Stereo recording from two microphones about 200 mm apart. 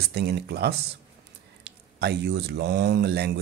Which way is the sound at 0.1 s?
55° right (ahead or behind).